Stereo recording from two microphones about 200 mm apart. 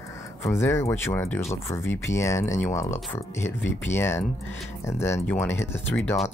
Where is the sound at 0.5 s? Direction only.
15° left (ahead or behind).